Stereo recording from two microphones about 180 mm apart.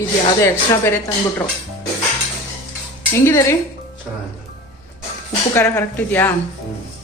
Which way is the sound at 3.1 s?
15° left (ahead or behind).